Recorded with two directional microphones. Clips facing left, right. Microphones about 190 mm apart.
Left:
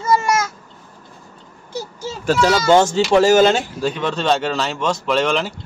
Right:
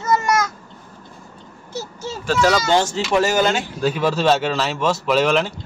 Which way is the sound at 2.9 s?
30° left (ahead or behind).